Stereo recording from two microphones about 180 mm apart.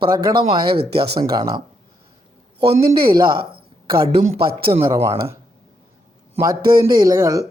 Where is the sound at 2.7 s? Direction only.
30° right (ahead or behind).